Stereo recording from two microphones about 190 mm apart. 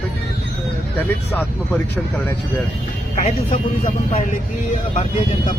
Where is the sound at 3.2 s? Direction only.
35° left (ahead or behind).